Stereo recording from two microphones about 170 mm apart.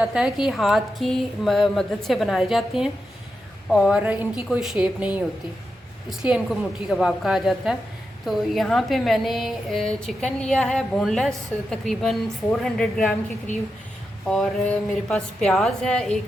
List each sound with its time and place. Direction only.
0.0 s a woman's voice: 5° right (ahead or behind)
13.5 s speech: 45° left (ahead or behind)
14.3 s a woman's voice: 5° left (ahead or behind)